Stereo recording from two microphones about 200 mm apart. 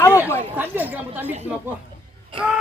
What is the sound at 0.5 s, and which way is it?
Speech, 10° right (ahead or behind).